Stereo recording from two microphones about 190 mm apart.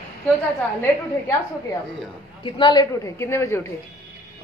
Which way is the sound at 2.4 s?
25° left (ahead or behind).